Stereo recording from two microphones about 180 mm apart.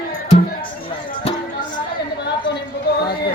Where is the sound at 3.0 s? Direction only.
60° left (ahead or behind).